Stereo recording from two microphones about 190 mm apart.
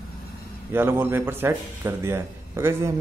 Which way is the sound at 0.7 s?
10° right (ahead or behind).